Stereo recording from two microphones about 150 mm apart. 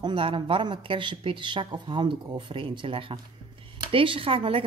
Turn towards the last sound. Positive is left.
turn(degrees=-35)  # may be behind; listen again after turning